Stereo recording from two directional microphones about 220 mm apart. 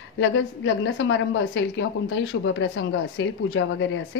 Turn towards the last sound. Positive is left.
turn(degrees=60)  # may be behind; listen again after turning